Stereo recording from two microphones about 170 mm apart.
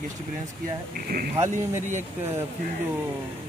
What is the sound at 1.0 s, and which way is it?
Speech, 60° right (ahead or behind).